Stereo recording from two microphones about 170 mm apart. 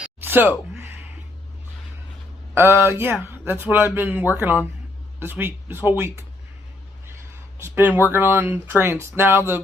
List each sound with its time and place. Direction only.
0.0 s a sound: 10° right (ahead or behind)
2.6 s speech: 15° right (ahead or behind)
7.6 s speech: 15° right (ahead or behind)